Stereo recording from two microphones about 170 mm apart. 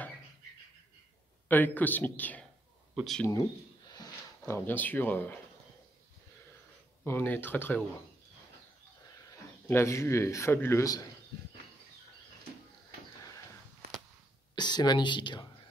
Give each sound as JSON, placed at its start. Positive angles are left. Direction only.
{"t": 1.5, "sound": "speech", "side_deg": 10}
{"t": 4.5, "sound": "speech", "side_deg": 10}
{"t": 7.1, "sound": "speech", "side_deg": 10}
{"t": 9.3, "sound": "speech", "side_deg": 15}
{"t": 14.5, "sound": "speech", "side_deg": 25}